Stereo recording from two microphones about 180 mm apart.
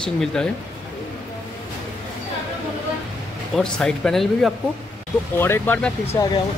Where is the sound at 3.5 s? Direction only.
5° left (ahead or behind).